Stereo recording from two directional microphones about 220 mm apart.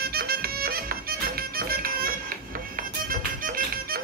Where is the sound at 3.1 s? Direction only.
40° right (ahead or behind).